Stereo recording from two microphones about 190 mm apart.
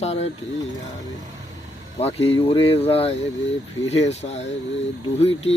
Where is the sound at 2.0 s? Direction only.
30° left (ahead or behind).